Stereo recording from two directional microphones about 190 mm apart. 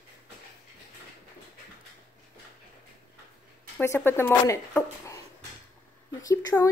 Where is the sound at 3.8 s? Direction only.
15° left (ahead or behind).